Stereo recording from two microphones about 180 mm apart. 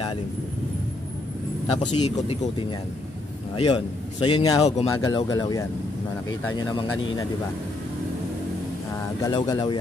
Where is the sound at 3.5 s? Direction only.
30° left (ahead or behind).